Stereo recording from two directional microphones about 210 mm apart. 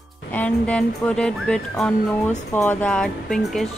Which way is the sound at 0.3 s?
5° left (ahead or behind).